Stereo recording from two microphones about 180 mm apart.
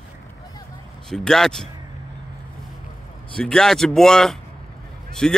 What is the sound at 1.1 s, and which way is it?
Speech, 5° left (ahead or behind).